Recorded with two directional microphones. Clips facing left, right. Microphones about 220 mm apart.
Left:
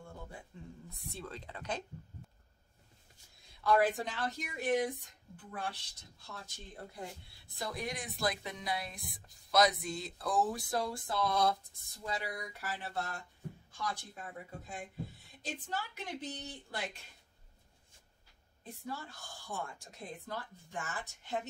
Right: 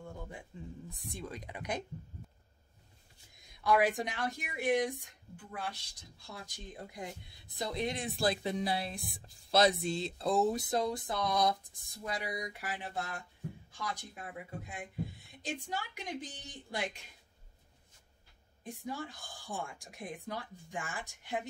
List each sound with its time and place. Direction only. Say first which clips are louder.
0.5 s speech: right 4 dB; 15° right (ahead or behind)
3.6 s speech: even; 15° right (ahead or behind)
6.1 s a woman's voice: right 2 dB; 10° right (ahead or behind)
18.6 s speech: right 3 dB; 15° right (ahead or behind)